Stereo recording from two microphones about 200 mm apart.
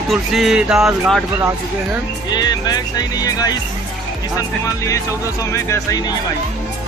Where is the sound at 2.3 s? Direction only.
20° left (ahead or behind).